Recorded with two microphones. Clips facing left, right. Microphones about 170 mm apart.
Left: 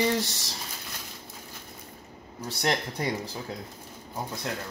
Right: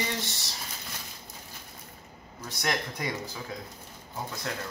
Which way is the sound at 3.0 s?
35° left (ahead or behind).